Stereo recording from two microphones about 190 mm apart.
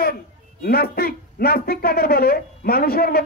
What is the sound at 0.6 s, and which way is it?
A man's voice, 55° left (ahead or behind).